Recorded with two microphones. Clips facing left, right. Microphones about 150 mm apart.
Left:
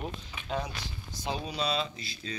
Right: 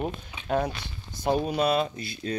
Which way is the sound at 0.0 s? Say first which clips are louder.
Right 6 dB; 55° right (ahead or behind).